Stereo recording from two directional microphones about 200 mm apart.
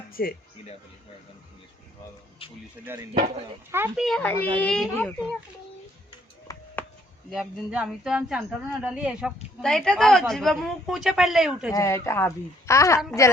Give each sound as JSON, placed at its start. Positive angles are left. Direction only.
{"t": 0.1, "sound": "speech", "side_deg": 45}
{"t": 2.4, "sound": "speech", "side_deg": 30}
{"t": 2.8, "sound": "speech", "side_deg": -15}
{"t": 6.5, "sound": "a sound", "side_deg": 15}
{"t": 7.3, "sound": "speech", "side_deg": -5}
{"t": 11.7, "sound": "speech", "side_deg": 15}